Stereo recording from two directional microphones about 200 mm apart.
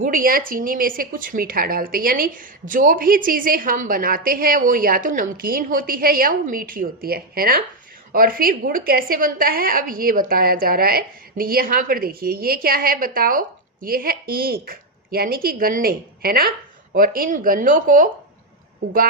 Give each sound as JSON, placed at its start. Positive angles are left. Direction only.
{"t": 0.0, "sound": "speech", "side_deg": -45}